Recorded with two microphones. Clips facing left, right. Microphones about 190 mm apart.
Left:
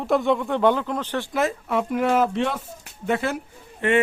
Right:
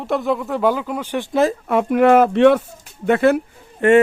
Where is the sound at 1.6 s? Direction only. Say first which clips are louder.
Right 8 dB; 60° right (ahead or behind).